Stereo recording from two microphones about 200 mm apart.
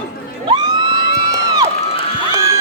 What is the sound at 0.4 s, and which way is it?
Crowd, 20° right (ahead or behind).